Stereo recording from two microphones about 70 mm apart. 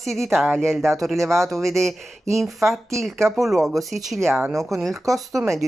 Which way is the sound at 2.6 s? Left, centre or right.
Right.